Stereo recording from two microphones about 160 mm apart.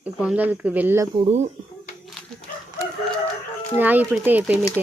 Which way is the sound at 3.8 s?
10° right (ahead or behind).